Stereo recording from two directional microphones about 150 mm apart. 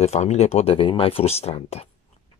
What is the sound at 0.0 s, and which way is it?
Speech, 45° left (ahead or behind).